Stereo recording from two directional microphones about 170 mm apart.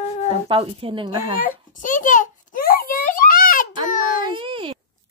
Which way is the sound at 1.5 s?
50° left (ahead or behind).